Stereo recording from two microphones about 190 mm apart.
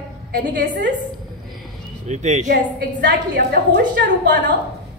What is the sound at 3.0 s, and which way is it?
A woman's voice, 60° right (ahead or behind).